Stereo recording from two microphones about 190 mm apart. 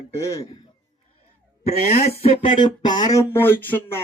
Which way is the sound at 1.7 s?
35° left (ahead or behind).